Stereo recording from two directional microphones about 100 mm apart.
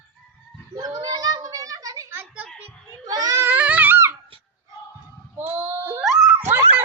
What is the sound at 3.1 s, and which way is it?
Speech, 40° right (ahead or behind).